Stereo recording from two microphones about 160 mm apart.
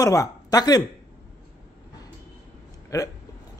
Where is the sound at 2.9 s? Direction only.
20° left (ahead or behind).